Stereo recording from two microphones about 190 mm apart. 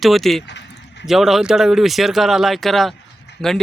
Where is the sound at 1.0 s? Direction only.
Centre (ahead or behind).